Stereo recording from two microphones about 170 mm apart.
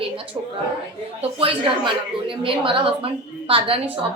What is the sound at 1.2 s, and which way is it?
A woman's voice, 30° right (ahead or behind).